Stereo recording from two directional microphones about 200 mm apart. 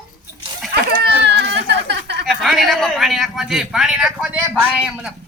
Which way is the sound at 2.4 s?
Centre (ahead or behind).